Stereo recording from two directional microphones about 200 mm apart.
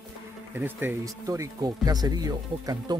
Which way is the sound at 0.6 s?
10° right (ahead or behind).